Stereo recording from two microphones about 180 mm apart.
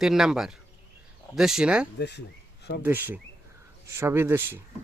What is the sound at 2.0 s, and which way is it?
Speech, 65° left (ahead or behind).